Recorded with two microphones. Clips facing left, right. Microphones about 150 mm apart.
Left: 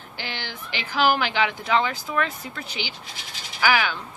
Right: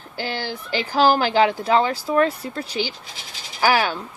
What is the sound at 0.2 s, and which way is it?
Speech, 40° right (ahead or behind).